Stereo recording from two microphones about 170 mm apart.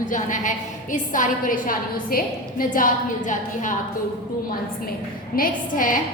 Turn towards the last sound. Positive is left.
turn(degrees=55)  # may be behind; listen again after turning